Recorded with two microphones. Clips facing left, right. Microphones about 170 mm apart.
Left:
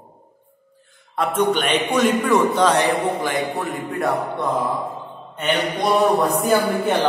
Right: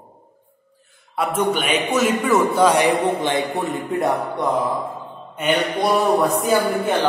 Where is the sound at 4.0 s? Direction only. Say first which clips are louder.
Right 1 dB; 20° right (ahead or behind).